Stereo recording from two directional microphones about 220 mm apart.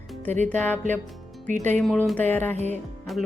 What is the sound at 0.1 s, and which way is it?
Music, 5° left (ahead or behind).